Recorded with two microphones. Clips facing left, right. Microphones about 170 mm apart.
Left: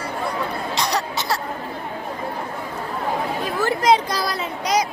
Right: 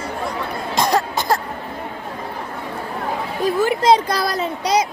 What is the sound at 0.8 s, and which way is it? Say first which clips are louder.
Cough: right 7 dB; 50° right (ahead or behind).